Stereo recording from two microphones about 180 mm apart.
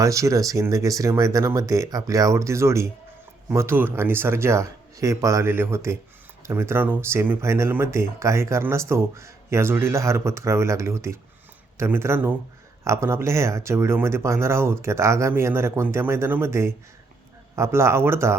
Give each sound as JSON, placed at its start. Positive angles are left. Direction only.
{"t": 0.0, "sound": "speech", "side_deg": -15}